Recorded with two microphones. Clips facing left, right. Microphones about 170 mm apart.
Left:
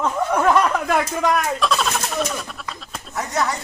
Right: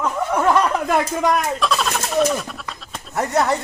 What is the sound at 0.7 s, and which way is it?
Speech, 10° right (ahead or behind).